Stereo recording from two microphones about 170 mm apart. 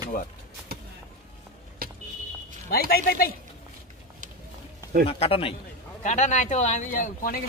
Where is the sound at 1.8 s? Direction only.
60° right (ahead or behind).